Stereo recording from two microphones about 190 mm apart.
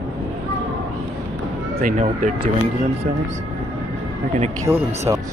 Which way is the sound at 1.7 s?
45° right (ahead or behind).